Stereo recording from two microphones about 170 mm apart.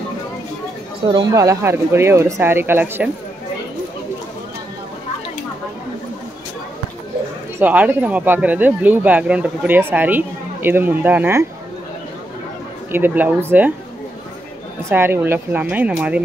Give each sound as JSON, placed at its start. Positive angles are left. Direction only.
{"t": 1.0, "sound": "speech", "side_deg": -25}
{"t": 7.5, "sound": "speech", "side_deg": -10}
{"t": 12.9, "sound": "speech", "side_deg": -10}
{"t": 14.9, "sound": "speech", "side_deg": -15}